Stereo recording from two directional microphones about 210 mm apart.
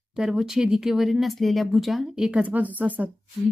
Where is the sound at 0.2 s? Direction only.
Centre (ahead or behind).